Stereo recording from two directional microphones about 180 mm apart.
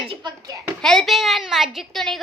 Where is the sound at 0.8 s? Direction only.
5° left (ahead or behind).